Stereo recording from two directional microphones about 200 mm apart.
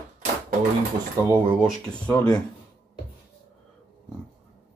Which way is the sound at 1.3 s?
5° right (ahead or behind).